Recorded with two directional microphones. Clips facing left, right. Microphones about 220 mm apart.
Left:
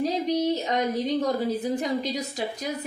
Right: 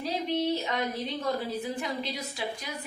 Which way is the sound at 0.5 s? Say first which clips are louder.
Left 5 dB; 40° left (ahead or behind).